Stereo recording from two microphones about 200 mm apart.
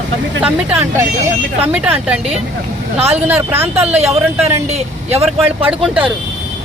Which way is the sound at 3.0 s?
30° right (ahead or behind).